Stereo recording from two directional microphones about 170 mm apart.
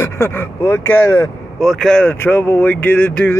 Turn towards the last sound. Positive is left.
turn(degrees=10)  # may be behind; listen again after turning